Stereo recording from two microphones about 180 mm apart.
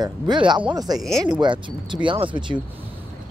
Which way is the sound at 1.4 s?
25° right (ahead or behind).